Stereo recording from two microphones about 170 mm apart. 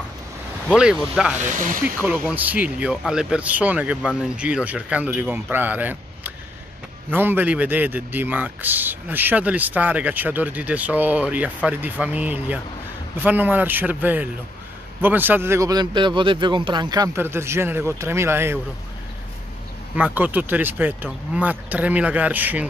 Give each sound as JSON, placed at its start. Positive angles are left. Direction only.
{"t": 0.7, "sound": "speech", "side_deg": -5}
{"t": 1.4, "sound": "speech", "side_deg": -50}
{"t": 2.0, "sound": "a man's voice", "side_deg": -10}
{"t": 20.0, "sound": "a man's voice", "side_deg": -10}